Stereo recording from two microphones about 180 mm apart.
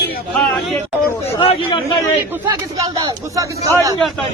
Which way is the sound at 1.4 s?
30° left (ahead or behind).